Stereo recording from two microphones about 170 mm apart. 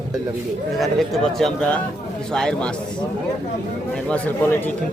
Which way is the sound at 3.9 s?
5° left (ahead or behind).